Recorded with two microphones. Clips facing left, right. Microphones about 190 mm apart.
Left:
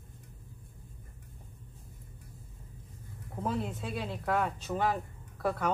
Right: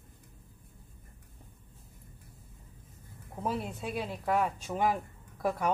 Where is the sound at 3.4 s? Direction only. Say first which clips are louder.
Even; 10° right (ahead or behind).